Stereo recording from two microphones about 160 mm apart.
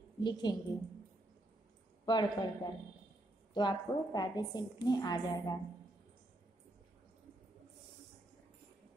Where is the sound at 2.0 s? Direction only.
25° left (ahead or behind).